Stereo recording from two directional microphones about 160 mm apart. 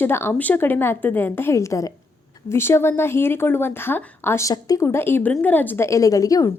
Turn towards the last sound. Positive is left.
turn(degrees=20)  # may be behind; listen again after turning